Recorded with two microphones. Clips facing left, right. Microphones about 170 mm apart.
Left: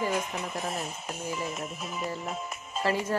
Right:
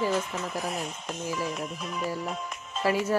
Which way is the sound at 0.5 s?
Centre (ahead or behind).